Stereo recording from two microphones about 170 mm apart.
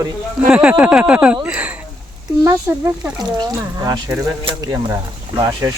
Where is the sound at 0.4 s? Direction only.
5° right (ahead or behind).